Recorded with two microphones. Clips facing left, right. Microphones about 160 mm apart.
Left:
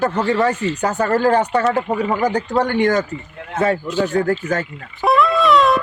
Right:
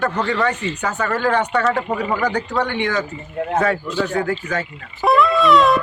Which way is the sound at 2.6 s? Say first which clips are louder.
Left 6 dB; 45° left (ahead or behind).